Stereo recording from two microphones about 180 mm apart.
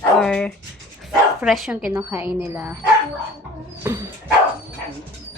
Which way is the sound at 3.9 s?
15° right (ahead or behind).